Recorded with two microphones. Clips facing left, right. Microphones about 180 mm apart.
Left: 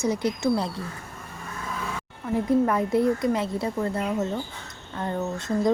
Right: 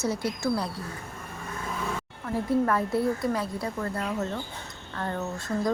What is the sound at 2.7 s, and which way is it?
Speech, 20° left (ahead or behind).